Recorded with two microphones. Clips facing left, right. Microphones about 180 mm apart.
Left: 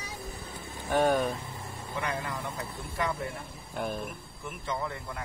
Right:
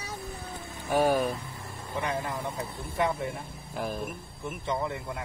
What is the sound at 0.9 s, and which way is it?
Speech, 5° right (ahead or behind).